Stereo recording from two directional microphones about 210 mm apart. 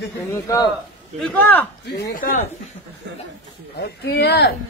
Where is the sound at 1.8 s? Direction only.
55° left (ahead or behind).